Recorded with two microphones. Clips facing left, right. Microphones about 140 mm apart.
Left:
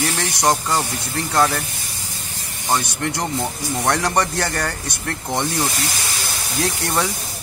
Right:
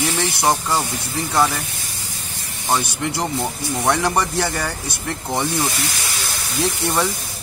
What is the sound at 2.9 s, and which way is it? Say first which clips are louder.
Speech: even; 10° right (ahead or behind).